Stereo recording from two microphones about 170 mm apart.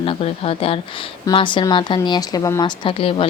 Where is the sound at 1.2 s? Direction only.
30° left (ahead or behind).